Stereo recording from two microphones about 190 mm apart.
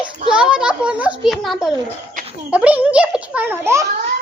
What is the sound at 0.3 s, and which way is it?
A child's voice, 5° right (ahead or behind).